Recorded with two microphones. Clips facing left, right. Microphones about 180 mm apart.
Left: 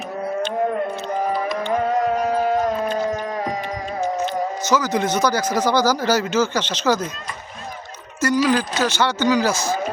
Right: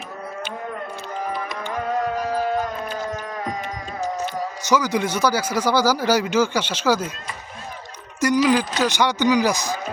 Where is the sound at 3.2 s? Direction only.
30° left (ahead or behind).